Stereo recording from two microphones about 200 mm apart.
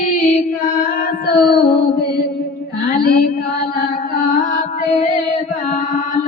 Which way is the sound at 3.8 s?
40° left (ahead or behind).